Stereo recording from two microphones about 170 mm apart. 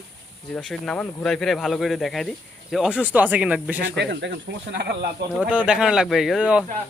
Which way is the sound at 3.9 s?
90° right.